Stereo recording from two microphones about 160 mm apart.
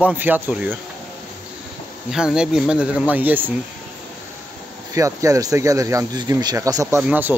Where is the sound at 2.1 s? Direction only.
5° right (ahead or behind).